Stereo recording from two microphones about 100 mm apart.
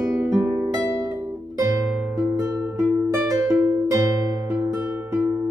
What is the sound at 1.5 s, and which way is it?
Music, 25° right (ahead or behind).